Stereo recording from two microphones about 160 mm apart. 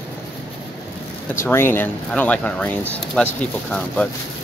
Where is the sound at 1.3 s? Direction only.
15° left (ahead or behind).